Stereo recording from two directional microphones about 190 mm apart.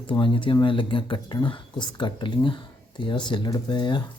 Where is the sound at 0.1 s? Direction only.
25° left (ahead or behind).